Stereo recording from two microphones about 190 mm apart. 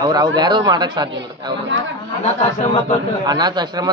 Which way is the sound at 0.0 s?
20° right (ahead or behind).